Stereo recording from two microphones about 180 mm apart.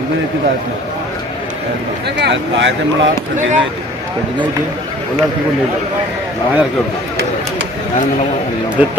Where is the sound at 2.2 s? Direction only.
85° right.